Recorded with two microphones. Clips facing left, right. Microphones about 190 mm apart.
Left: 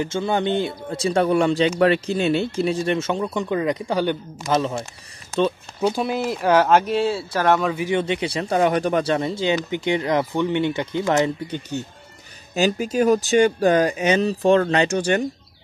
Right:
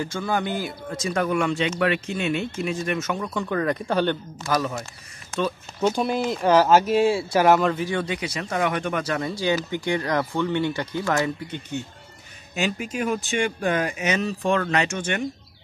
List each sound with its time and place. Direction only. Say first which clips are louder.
0.0 s speech: left 4 dB; 25° left (ahead or behind)
4.5 s speech: left 3 dB; 25° left (ahead or behind)
5.9 s speech: even; 5° left (ahead or behind)
7.7 s speech: left 4 dB; 15° left (ahead or behind)
8.0 s speech: left 5 dB; 25° left (ahead or behind)
12.5 s speech: left 7 dB; 35° left (ahead or behind)